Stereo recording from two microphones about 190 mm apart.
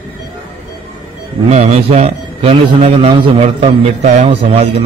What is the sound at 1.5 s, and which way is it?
A man's voice, 35° right (ahead or behind).